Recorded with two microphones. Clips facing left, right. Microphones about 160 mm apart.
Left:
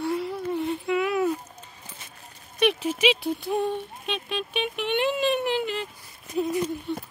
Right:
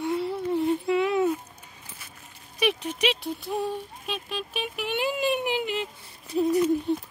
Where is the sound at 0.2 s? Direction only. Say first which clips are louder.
Right 2 dB; 30° right (ahead or behind).